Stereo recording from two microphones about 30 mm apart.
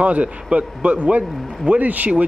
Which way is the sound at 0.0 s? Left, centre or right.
Right.